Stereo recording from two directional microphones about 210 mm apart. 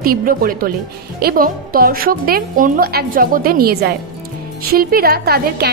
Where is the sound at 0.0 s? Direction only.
45° right (ahead or behind).